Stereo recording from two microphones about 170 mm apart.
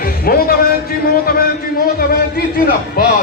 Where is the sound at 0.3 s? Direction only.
60° left (ahead or behind).